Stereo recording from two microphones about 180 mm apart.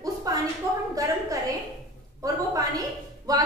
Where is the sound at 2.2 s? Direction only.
20° right (ahead or behind).